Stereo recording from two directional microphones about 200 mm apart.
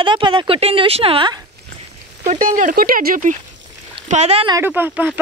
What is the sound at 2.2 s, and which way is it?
Speech, 40° right (ahead or behind).